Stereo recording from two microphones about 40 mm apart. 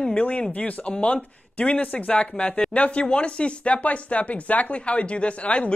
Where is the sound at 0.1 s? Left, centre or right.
Left.